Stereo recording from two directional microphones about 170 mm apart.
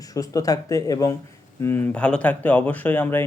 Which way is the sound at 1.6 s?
10° left (ahead or behind).